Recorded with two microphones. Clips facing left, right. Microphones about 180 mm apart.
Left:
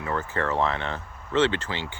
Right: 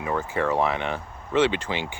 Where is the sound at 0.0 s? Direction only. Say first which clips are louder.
Right 3 dB; 10° right (ahead or behind).